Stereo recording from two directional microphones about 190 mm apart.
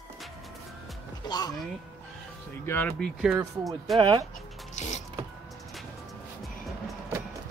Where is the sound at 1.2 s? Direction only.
20° left (ahead or behind).